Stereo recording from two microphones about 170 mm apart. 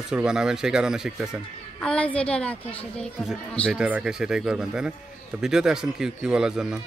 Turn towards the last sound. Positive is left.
turn(degrees=-5)  # may be behind; listen again after turning